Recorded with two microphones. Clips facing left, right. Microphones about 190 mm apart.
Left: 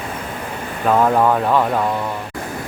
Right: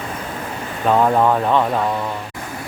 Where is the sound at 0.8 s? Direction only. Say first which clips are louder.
Even; centre (ahead or behind).